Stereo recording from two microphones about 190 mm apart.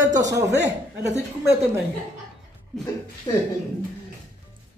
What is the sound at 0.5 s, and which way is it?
Speech, 65° right (ahead or behind).